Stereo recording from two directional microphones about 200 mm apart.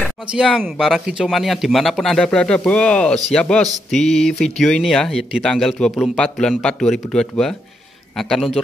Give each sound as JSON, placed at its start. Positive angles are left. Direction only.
{"t": 0.0, "sound": "speech", "side_deg": -5}